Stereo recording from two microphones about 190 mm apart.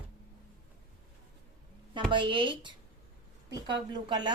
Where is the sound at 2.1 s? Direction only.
25° right (ahead or behind).